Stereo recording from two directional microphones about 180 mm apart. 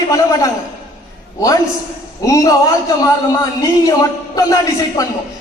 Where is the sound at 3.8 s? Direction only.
20° left (ahead or behind).